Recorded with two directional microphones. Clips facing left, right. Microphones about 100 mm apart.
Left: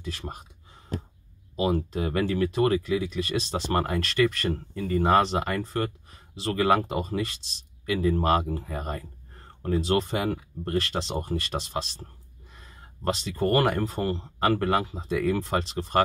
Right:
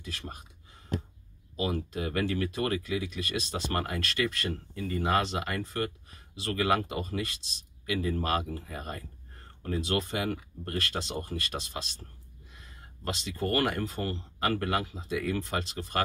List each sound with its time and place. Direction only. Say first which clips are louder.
0.0 s speech: left 5 dB; 30° left (ahead or behind)
1.6 s speech: left 6 dB; 30° left (ahead or behind)